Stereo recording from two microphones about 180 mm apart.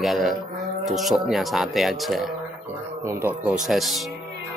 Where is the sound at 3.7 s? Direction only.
Centre (ahead or behind).